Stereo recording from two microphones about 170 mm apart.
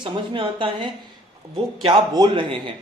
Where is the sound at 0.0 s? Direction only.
30° right (ahead or behind).